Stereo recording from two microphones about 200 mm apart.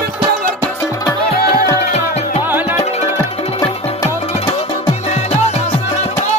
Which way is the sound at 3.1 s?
15° left (ahead or behind).